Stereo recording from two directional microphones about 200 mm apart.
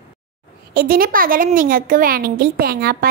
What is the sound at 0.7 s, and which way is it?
A woman's voice, 45° right (ahead or behind).